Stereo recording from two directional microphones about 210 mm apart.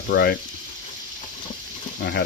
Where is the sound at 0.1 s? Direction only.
50° left (ahead or behind).